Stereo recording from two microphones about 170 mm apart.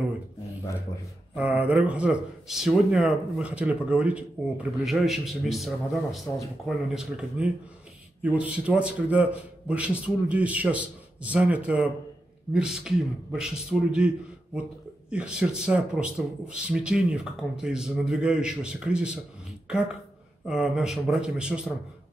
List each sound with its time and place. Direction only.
1.3 s a man's voice: 10° right (ahead or behind)
20.4 s speech: 5° right (ahead or behind)